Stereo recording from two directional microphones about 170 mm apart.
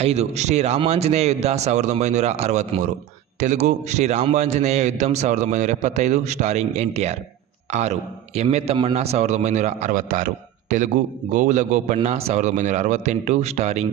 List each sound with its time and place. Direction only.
0.0 s a man's voice: 40° right (ahead or behind)